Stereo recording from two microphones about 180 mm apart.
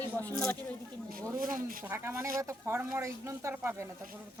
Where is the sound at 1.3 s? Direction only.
50° right (ahead or behind).